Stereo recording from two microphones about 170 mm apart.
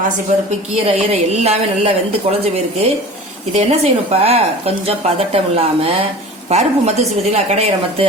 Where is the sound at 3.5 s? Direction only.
40° right (ahead or behind).